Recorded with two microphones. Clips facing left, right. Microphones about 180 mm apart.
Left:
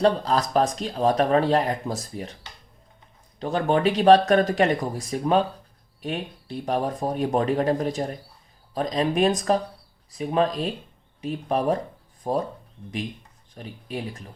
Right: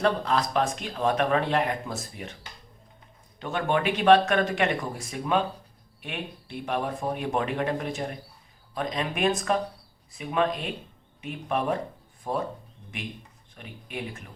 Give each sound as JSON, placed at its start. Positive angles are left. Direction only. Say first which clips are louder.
{"t": 0.0, "sound": "speech", "louder": "left 4 dB", "side_deg": 35}
{"t": 3.4, "sound": "speech", "louder": "left 4 dB", "side_deg": 35}
{"t": 13.6, "sound": "speech", "louder": "left 4 dB", "side_deg": 35}